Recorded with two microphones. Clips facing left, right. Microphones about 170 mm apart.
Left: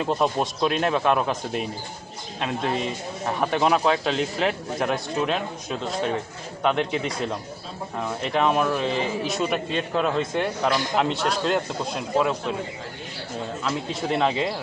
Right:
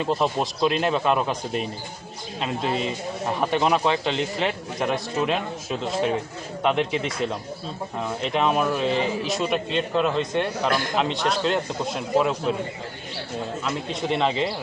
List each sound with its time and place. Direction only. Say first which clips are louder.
0.0 s speech: even; centre (ahead or behind)
10.7 s speech: even; 55° right (ahead or behind)
10.9 s speech: even; 5° left (ahead or behind)
13.9 s speech: even; centre (ahead or behind)